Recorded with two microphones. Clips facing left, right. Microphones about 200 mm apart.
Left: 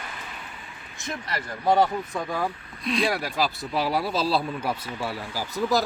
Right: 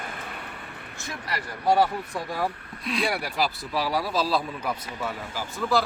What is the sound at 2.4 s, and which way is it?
Speech, 5° right (ahead or behind).